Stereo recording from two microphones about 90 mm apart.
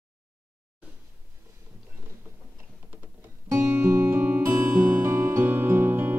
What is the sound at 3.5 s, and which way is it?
Music, 25° right (ahead or behind).